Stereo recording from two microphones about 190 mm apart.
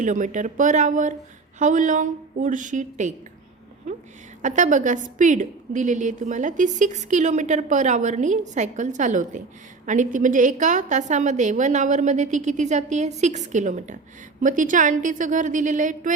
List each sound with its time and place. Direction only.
0.0 s a woman's voice: 40° right (ahead or behind)
4.4 s a woman's voice: 40° right (ahead or behind)